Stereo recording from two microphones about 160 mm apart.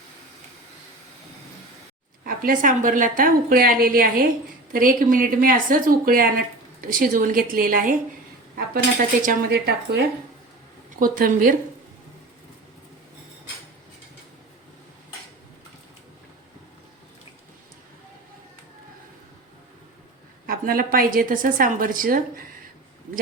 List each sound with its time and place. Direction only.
2.2 s a woman's voice: 60° right (ahead or behind); by 10.0 s 85° right
11.0 s a woman's voice: 60° right (ahead or behind)
20.5 s a woman's voice: 65° right (ahead or behind)